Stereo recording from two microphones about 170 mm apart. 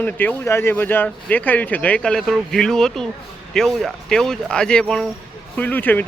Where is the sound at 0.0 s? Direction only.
10° left (ahead or behind).